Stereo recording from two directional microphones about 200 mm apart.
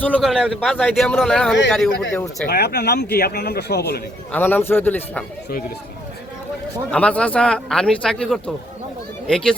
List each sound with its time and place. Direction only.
0.0 s a man's voice: 5° left (ahead or behind)
2.5 s speech: 55° left (ahead or behind)
4.3 s a man's voice: 10° left (ahead or behind)
6.9 s a man's voice: 5° left (ahead or behind)